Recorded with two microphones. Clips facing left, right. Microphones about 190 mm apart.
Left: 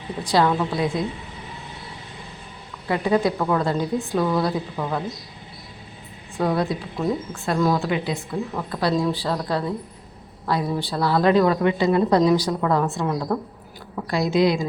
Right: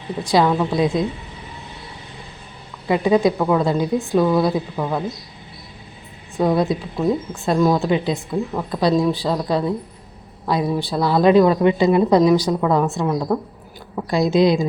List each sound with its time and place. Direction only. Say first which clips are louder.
0.3 s a woman's voice: right 3 dB; 10° right (ahead or behind)
2.8 s a woman's voice: right 4 dB; 15° right (ahead or behind)
6.4 s a woman's voice: right 4 dB; 15° right (ahead or behind)
13.9 s a woman's voice: right 4 dB; 25° right (ahead or behind)